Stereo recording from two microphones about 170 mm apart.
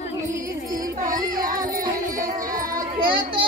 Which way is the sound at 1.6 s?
55° right (ahead or behind).